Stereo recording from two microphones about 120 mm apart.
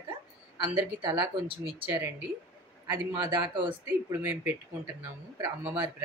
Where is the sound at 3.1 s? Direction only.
40° right (ahead or behind).